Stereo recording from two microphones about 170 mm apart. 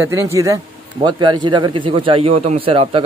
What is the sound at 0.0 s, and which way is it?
A man's voice, 15° right (ahead or behind).